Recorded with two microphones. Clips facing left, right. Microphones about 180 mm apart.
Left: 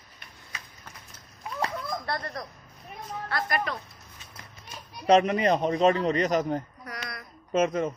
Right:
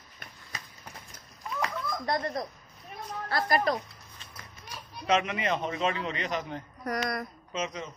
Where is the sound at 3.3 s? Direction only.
35° right (ahead or behind).